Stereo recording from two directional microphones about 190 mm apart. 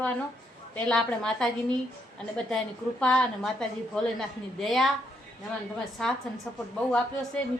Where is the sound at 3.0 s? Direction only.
5° left (ahead or behind).